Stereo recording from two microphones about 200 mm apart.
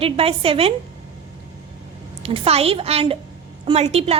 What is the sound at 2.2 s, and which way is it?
A woman's voice, 30° right (ahead or behind).